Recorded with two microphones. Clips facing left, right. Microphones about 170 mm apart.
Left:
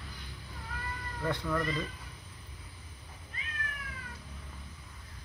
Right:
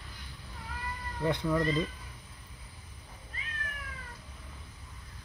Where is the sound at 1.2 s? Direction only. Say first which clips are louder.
Right 4 dB; 15° right (ahead or behind).